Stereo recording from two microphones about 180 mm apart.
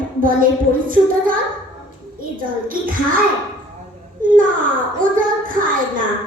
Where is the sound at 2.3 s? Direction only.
50° right (ahead or behind).